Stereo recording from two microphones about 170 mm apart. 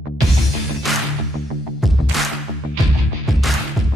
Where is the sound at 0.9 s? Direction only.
Centre (ahead or behind).